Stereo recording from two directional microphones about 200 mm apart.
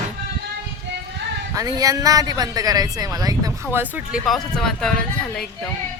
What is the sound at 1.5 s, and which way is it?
Speech, 15° right (ahead or behind).